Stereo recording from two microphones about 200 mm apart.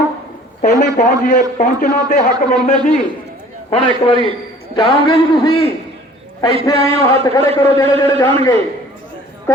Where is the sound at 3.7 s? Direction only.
25° left (ahead or behind).